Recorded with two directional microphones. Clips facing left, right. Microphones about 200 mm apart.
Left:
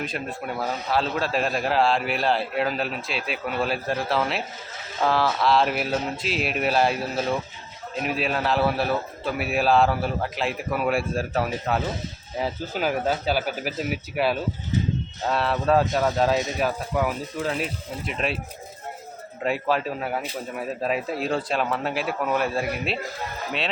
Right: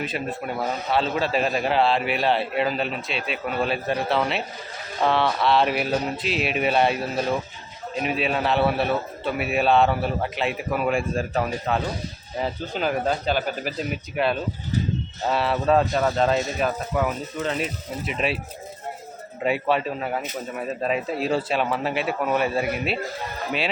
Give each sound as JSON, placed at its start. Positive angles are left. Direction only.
{"t": 0.0, "sound": "a man's voice", "side_deg": -5}
{"t": 18.0, "sound": "a man's voice", "side_deg": 0}
{"t": 19.4, "sound": "a man's voice", "side_deg": 0}